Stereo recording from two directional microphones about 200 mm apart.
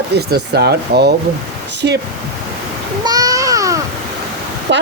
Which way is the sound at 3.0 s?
20° right (ahead or behind).